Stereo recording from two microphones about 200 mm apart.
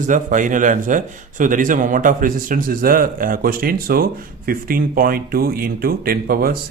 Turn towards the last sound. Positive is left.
turn(degrees=-45)  # may be behind; listen again after turning